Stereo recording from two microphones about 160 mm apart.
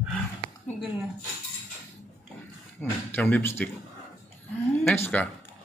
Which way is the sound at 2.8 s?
10° left (ahead or behind).